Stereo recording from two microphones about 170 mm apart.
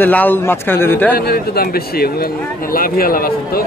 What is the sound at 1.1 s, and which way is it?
Speech, 65° left (ahead or behind).